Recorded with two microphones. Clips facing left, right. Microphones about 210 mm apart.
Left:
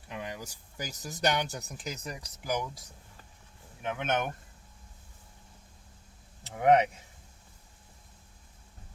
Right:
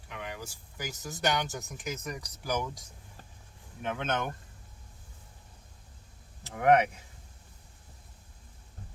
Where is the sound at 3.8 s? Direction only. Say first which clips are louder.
Left 1 dB; 15° left (ahead or behind).